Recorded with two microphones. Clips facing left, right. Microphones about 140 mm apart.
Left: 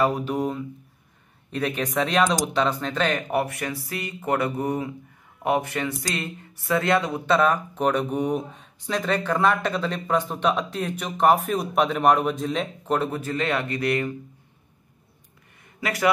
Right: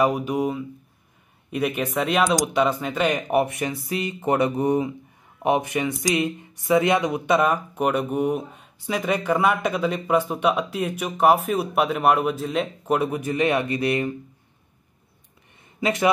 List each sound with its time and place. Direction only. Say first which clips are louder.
0.0 s speech: right 2 dB; 15° right (ahead or behind)
15.8 s a man's voice: right 3 dB; 20° right (ahead or behind)